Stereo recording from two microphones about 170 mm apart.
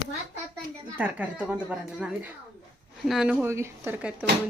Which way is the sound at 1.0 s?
10° right (ahead or behind).